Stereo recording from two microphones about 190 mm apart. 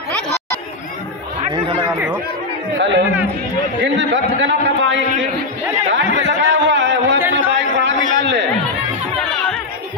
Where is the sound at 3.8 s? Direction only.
75° right (ahead or behind).